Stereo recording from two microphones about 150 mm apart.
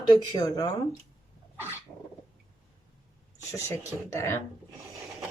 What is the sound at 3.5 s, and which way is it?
Speech, 20° left (ahead or behind).